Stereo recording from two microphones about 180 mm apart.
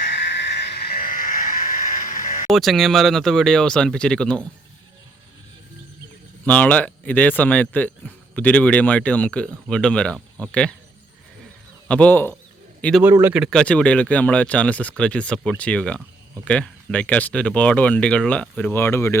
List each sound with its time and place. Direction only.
0.1 s a sound: 75° left (ahead or behind); by 2.5 s 45° left (ahead or behind)
2.5 s speech: centre (ahead or behind)
6.4 s speech: 10° left (ahead or behind)
11.9 s speech: 5° left (ahead or behind)
13.0 s speech: 10° right (ahead or behind)
13.4 s speech: 5° left (ahead or behind)